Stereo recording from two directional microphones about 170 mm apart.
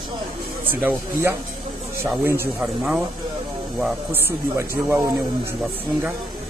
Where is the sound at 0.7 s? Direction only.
10° right (ahead or behind).